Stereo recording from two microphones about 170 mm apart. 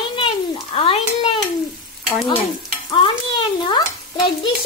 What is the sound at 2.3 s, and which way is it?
Stir, 30° left (ahead or behind).